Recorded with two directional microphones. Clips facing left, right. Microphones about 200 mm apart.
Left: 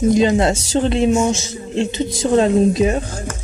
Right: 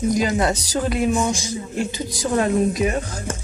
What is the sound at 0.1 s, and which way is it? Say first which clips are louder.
A man's voice: left 5 dB; 25° left (ahead or behind).